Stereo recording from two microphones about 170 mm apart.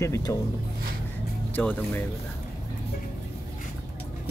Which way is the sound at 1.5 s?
10° left (ahead or behind).